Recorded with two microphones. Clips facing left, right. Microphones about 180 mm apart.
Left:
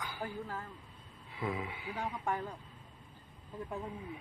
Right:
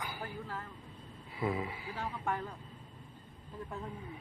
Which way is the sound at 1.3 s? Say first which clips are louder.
Right 3 dB; centre (ahead or behind).